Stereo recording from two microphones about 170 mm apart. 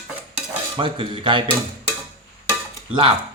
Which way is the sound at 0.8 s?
30° right (ahead or behind).